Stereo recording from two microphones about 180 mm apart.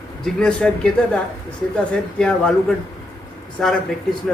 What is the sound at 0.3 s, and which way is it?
A man's voice, 5° left (ahead or behind).